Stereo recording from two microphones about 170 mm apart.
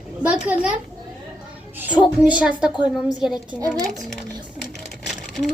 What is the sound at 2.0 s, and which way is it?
Speech, 5° right (ahead or behind).